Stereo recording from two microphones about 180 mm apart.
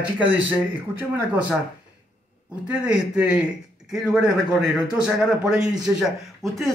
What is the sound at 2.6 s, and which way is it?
A man's voice, 5° right (ahead or behind).